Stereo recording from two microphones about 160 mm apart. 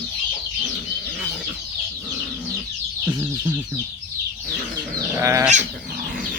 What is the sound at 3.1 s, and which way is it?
Speech, 15° right (ahead or behind).